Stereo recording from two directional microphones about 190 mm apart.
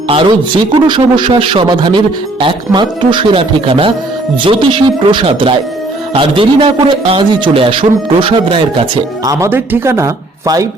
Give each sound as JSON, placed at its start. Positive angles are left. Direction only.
{"t": 0.1, "sound": "a man's voice", "side_deg": -30}
{"t": 9.3, "sound": "speech", "side_deg": -15}